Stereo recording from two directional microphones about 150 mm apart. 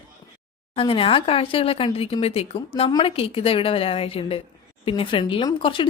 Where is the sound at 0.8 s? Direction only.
35° left (ahead or behind).